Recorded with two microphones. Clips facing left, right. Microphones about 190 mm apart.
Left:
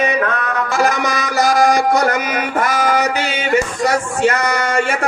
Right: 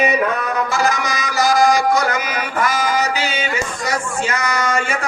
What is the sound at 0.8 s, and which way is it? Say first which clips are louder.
Music: left 3 dB; 55° left (ahead or behind).